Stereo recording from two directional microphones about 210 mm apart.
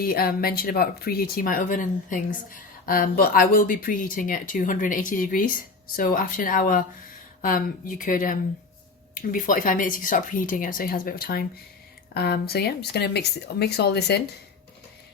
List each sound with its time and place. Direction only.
0.0 s speech: 45° left (ahead or behind)